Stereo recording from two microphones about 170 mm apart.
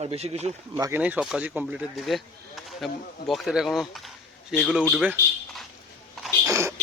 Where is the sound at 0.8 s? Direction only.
10° right (ahead or behind).